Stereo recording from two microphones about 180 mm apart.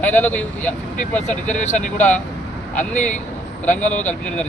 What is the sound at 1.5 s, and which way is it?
Speech, 40° left (ahead or behind).